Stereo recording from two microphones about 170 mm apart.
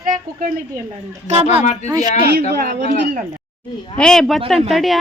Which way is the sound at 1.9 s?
20° right (ahead or behind).